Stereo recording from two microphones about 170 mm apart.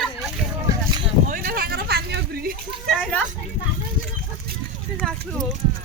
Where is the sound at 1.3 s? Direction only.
60° right (ahead or behind).